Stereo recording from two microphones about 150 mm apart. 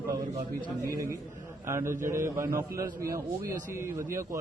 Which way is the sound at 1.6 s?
15° right (ahead or behind).